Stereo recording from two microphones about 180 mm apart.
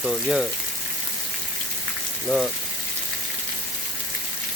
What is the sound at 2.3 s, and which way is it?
Speech, centre (ahead or behind).